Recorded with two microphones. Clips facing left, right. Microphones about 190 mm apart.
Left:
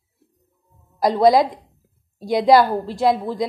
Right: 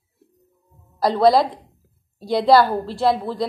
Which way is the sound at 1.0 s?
15° left (ahead or behind).